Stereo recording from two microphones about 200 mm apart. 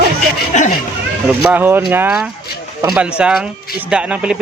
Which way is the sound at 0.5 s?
35° left (ahead or behind).